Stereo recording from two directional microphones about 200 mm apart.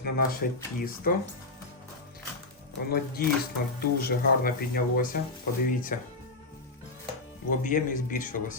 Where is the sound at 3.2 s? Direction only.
50° left (ahead or behind).